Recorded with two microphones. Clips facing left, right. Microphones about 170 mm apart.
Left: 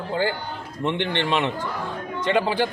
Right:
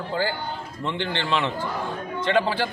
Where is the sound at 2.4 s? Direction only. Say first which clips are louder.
Left 3 dB; 15° left (ahead or behind).